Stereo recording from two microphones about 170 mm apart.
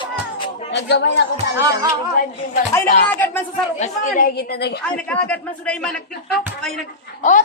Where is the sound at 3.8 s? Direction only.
45° left (ahead or behind); by 4.8 s 70° left (ahead or behind).